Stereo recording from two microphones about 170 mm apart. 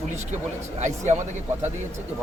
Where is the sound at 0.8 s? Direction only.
45° right (ahead or behind).